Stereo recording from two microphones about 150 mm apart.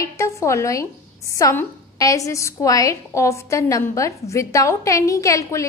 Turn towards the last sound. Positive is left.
turn(degrees=20)  # may be behind; listen again after turning